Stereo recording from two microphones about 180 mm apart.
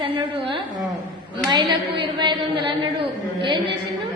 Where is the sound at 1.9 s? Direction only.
30° right (ahead or behind).